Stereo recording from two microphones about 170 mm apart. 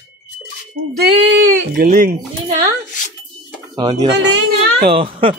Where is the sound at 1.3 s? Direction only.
90° right.